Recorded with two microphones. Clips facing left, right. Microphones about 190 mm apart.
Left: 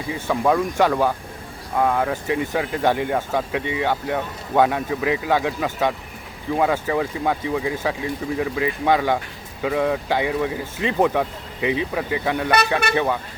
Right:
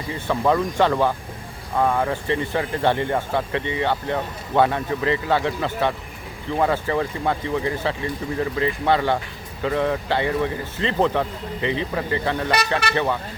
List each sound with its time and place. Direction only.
0.1 s speech: 10° left (ahead or behind)